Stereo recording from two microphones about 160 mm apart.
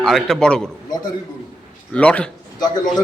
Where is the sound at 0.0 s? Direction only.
Centre (ahead or behind).